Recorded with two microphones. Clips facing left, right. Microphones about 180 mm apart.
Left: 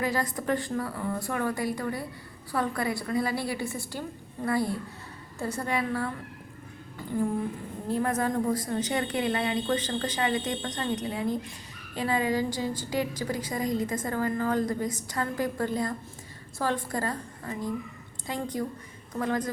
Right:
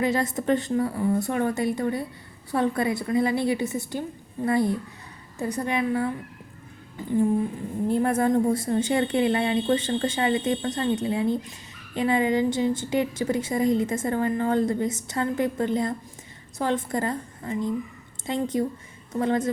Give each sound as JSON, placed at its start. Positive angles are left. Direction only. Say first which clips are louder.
{"t": 0.0, "sound": "a woman's voice", "louder": "right 5 dB", "side_deg": -25}
{"t": 7.9, "sound": "a woman's voice", "louder": "right 5 dB", "side_deg": -30}